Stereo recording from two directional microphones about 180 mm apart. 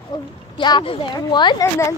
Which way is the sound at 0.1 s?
20° left (ahead or behind).